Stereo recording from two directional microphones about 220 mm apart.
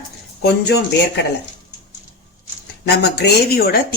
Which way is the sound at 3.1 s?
45° left (ahead or behind).